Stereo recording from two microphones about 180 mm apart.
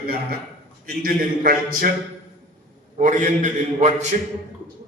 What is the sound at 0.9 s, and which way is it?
A man's voice, 55° right (ahead or behind).